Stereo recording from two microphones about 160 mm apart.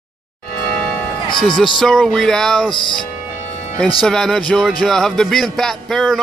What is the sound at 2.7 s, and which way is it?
Speech, 30° left (ahead or behind).